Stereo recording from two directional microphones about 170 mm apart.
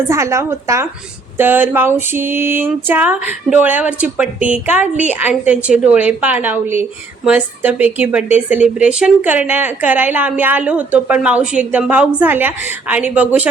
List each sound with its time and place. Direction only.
0.1 s speech: 15° right (ahead or behind)